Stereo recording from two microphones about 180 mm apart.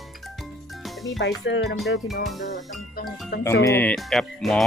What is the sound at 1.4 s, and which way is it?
Speech, 90° left.